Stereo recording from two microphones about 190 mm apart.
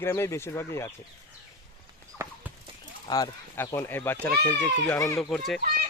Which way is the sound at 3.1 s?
20° left (ahead or behind).